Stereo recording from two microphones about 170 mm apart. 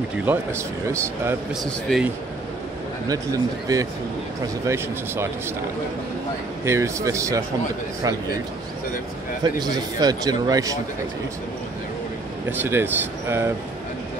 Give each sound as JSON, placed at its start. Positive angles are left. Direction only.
{"t": 0.2, "sound": "speech", "side_deg": -10}
{"t": 1.5, "sound": "a man's voice", "side_deg": 0}
{"t": 3.1, "sound": "a man's voice", "side_deg": -20}
{"t": 6.6, "sound": "speech", "side_deg": -15}
{"t": 9.4, "sound": "a man's voice", "side_deg": -25}
{"t": 12.4, "sound": "speech", "side_deg": -15}